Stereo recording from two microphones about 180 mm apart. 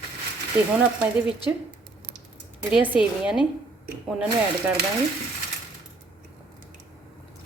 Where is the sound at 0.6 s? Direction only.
10° right (ahead or behind).